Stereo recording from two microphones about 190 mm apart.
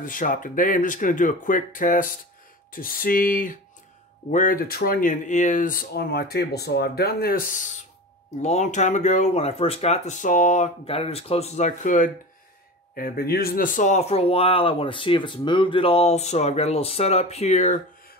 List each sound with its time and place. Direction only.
0.0 s speech: 45° left (ahead or behind)